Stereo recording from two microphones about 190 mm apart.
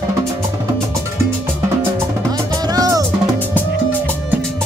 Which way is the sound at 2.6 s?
20° right (ahead or behind).